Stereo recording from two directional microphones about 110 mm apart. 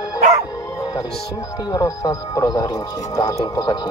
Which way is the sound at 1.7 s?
35° left (ahead or behind).